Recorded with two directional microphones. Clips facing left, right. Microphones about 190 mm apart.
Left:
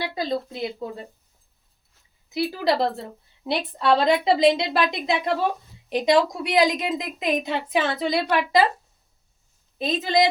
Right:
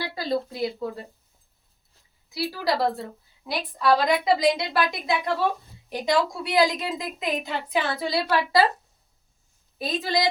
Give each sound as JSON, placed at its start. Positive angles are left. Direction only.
{"t": 0.0, "sound": "a woman's voice", "side_deg": 20}
{"t": 2.3, "sound": "a woman's voice", "side_deg": 20}
{"t": 9.7, "sound": "a woman's voice", "side_deg": 20}